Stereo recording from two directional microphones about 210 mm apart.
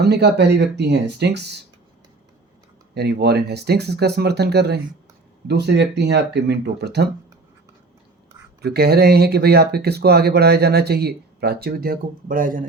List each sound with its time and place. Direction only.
0.0 s speech: 50° right (ahead or behind)
2.9 s speech: 50° right (ahead or behind)
8.6 s speech: 50° right (ahead or behind)